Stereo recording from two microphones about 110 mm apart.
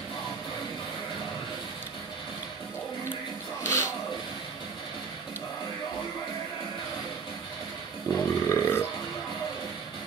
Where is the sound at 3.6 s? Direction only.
25° left (ahead or behind).